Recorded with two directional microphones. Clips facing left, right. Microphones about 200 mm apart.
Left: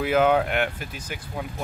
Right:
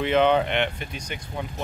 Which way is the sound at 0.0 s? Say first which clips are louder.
Even; 5° left (ahead or behind).